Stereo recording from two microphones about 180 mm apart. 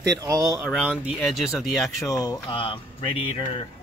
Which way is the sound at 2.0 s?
20° left (ahead or behind).